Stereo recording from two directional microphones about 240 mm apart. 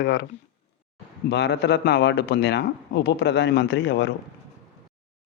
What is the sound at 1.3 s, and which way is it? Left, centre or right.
Speech, left.